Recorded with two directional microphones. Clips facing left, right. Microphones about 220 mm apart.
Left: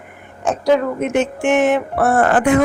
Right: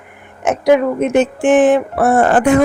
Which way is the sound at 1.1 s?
35° right (ahead or behind).